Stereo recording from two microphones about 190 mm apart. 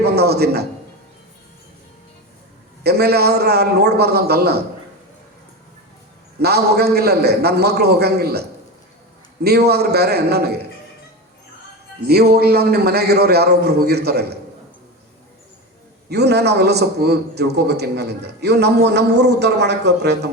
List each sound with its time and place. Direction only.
0.0 s a man's voice: 60° right (ahead or behind)
2.8 s a man's voice: 55° right (ahead or behind)
6.4 s a man's voice: 60° right (ahead or behind)
12.0 s a man's voice: 55° right (ahead or behind)
16.0 s a man's voice: 60° right (ahead or behind)